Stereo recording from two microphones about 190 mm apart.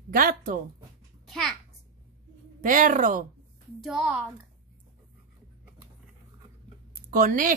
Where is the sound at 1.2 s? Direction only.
Centre (ahead or behind).